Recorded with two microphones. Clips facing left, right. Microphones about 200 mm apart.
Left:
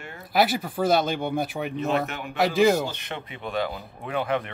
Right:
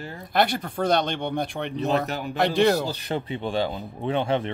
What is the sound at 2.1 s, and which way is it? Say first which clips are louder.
Speech: right 5 dB; 35° right (ahead or behind).